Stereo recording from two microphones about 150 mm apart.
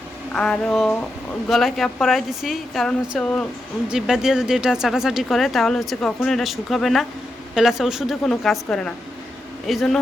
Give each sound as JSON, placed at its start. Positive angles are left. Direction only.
{"t": 0.3, "sound": "speech", "side_deg": 5}
{"t": 3.8, "sound": "speech", "side_deg": -5}